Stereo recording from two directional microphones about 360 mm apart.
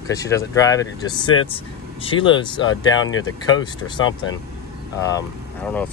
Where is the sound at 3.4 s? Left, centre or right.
Centre.